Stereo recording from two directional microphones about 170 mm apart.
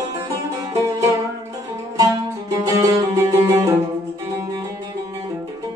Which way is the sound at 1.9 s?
20° right (ahead or behind).